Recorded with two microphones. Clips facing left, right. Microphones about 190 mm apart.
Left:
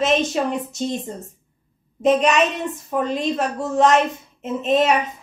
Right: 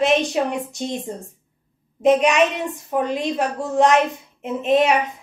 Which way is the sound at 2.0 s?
15° right (ahead or behind).